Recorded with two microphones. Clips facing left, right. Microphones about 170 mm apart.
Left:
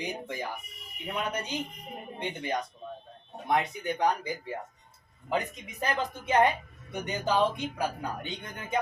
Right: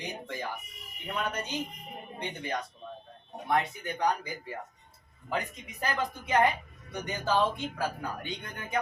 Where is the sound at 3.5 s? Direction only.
20° left (ahead or behind).